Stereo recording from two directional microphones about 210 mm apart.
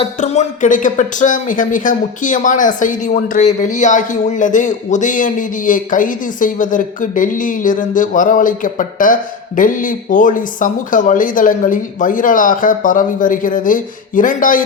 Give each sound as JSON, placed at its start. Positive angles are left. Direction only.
{"t": 0.0, "sound": "speech", "side_deg": 30}